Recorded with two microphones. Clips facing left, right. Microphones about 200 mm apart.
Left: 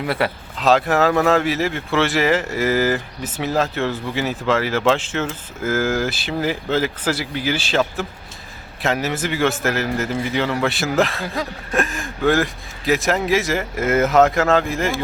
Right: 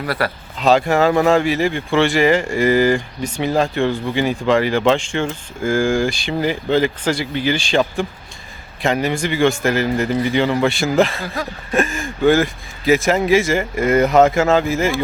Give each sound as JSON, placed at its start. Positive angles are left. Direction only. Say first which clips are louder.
{"t": 0.0, "sound": "speech", "louder": "even", "side_deg": 20}
{"t": 0.6, "sound": "speech", "louder": "right 2 dB", "side_deg": 0}